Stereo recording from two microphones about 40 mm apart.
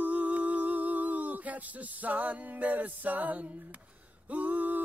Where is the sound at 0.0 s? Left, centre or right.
Right.